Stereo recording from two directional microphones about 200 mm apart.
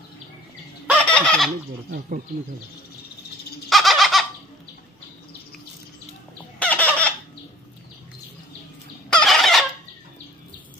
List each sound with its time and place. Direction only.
0.9 s fowl: 5° left (ahead or behind)
1.9 s speech: 45° right (ahead or behind)
3.6 s bird: centre (ahead or behind)
6.6 s fowl: 5° left (ahead or behind)
9.1 s fowl: centre (ahead or behind)